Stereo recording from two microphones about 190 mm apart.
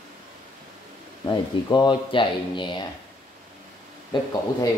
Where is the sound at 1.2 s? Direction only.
25° left (ahead or behind).